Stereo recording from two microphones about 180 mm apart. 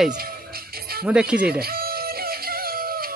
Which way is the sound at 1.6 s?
60° right (ahead or behind).